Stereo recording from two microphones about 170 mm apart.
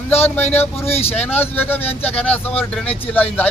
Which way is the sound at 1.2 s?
10° left (ahead or behind).